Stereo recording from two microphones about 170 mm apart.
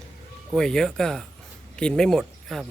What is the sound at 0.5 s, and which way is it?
Speech, 5° left (ahead or behind).